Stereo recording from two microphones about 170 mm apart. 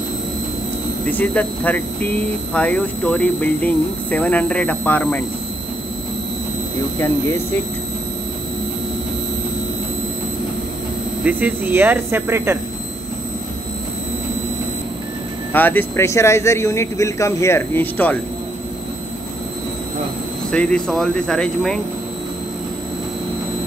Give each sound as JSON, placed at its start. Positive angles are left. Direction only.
{"t": 1.0, "sound": "speech", "side_deg": 10}
{"t": 11.2, "sound": "speech", "side_deg": -10}
{"t": 15.5, "sound": "speech", "side_deg": 10}
{"t": 20.5, "sound": "speech", "side_deg": 5}